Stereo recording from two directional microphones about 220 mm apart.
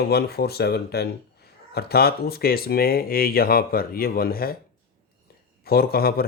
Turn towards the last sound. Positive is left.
turn(degrees=45)  # may be behind; listen again after turning